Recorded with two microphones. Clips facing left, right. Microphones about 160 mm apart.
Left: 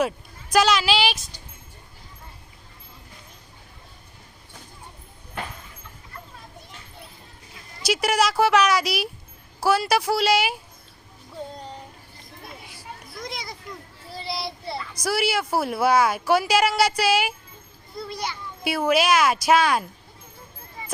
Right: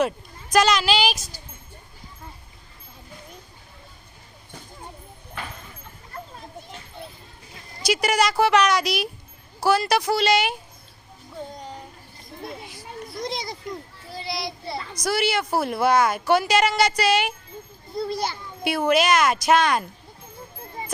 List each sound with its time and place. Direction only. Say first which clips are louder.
0.5 s speech: even; centre (ahead or behind)
7.9 s speech: even; 5° left (ahead or behind)
13.2 s children playing: right 4 dB; 30° right (ahead or behind)
14.2 s child singing: right 1 dB; 30° left (ahead or behind)
15.0 s speech: right 1 dB; 5° left (ahead or behind)
17.9 s a child's voice: right 5 dB; 30° right (ahead or behind)
18.6 s speech: right 1 dB; 5° left (ahead or behind)